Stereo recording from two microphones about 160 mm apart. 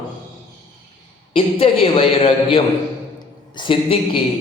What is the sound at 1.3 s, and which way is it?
A man's voice, 35° left (ahead or behind).